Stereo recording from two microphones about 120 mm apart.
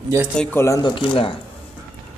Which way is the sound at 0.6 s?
25° left (ahead or behind).